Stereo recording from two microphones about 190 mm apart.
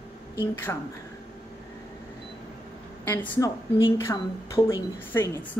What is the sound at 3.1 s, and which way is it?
A woman's voice, 15° left (ahead or behind).